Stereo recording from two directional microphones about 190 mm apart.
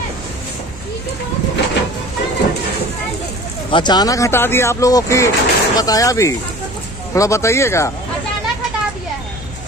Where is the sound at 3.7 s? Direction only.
25° left (ahead or behind).